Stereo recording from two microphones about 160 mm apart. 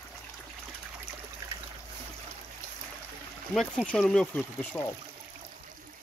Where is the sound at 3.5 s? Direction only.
5° left (ahead or behind).